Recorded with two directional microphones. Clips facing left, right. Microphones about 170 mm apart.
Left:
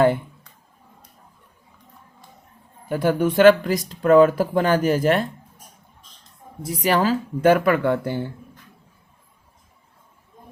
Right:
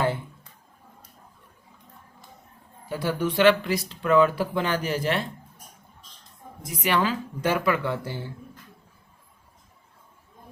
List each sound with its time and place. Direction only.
2.9 s speech: 50° left (ahead or behind)
6.6 s speech: 35° left (ahead or behind); by 8.2 s 55° left (ahead or behind)